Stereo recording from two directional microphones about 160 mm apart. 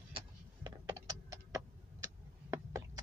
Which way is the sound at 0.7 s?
25° right (ahead or behind).